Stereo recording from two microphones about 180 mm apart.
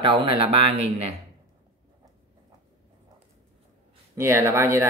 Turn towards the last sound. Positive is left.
turn(degrees=-15)  # may be behind; listen again after turning